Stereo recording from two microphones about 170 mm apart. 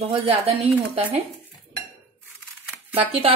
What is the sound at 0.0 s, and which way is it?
A woman's voice, 30° right (ahead or behind).